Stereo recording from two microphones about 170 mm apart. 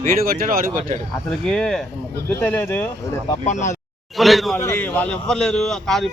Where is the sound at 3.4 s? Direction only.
45° left (ahead or behind).